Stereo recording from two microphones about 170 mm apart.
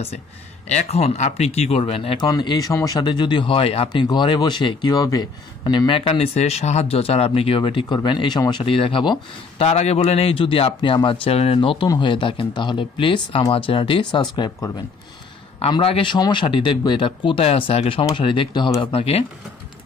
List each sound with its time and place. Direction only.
0.7 s speech: 40° left (ahead or behind)